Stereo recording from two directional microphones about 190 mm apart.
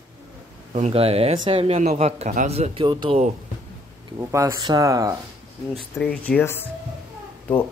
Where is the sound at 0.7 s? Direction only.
35° right (ahead or behind).